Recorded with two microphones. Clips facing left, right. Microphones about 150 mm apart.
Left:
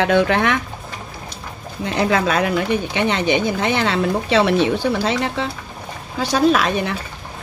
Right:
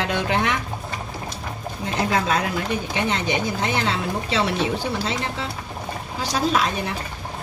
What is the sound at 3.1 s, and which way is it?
Speech, 70° left (ahead or behind).